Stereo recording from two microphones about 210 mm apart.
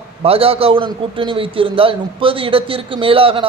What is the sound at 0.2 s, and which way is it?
A man's voice, 25° right (ahead or behind).